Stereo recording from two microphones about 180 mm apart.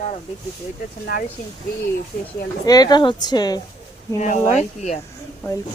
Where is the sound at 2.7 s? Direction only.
20° left (ahead or behind).